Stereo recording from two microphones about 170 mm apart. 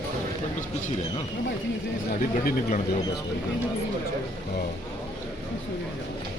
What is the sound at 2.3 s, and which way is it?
Speech, 45° left (ahead or behind).